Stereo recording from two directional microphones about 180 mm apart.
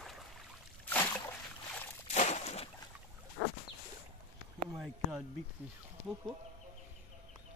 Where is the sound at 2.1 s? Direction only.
35° left (ahead or behind).